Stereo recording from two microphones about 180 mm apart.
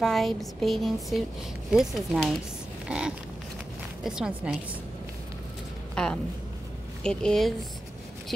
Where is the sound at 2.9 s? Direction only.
5° right (ahead or behind).